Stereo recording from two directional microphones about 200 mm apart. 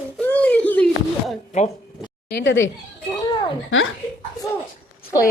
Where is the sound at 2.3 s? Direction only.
60° left (ahead or behind).